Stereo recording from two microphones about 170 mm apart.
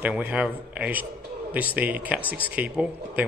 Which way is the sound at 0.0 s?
10° right (ahead or behind).